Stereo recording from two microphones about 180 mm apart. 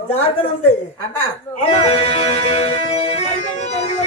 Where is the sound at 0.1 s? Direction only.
35° left (ahead or behind).